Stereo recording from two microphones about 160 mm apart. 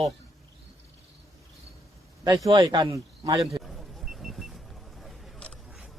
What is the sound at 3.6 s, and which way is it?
Vehicle, centre (ahead or behind).